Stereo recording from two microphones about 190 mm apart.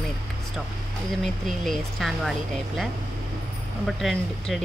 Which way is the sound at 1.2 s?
Centre (ahead or behind).